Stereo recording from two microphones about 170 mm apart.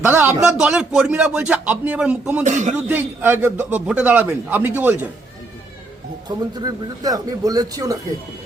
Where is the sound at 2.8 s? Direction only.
10° right (ahead or behind).